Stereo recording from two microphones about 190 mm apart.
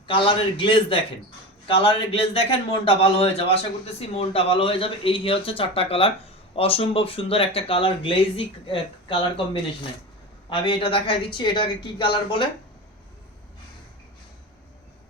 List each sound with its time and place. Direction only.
0.1 s speech: 25° left (ahead or behind)